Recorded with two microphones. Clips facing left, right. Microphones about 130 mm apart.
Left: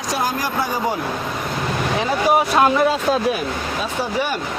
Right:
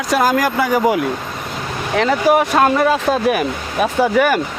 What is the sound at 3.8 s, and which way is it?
Speech, 65° right (ahead or behind).